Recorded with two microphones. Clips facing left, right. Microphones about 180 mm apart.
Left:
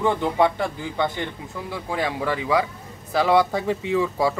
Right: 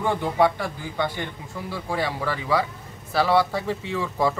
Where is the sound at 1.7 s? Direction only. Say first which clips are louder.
Left 1 dB; 15° left (ahead or behind).